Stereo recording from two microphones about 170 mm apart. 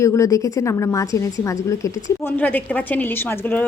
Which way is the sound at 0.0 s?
20° left (ahead or behind).